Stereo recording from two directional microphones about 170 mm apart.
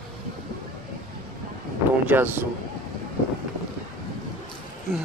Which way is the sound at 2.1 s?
10° right (ahead or behind).